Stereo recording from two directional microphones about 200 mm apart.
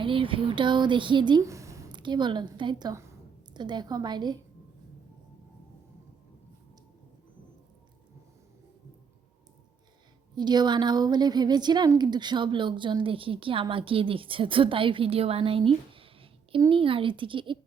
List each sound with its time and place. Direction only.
0.0 s a woman's voice: 25° right (ahead or behind)
10.3 s a woman's voice: 20° right (ahead or behind)